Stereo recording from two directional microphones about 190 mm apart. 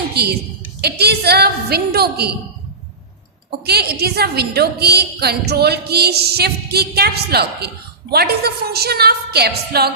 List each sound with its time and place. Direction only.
0.1 s a woman's voice: 60° right (ahead or behind)
3.7 s a woman's voice: 55° right (ahead or behind)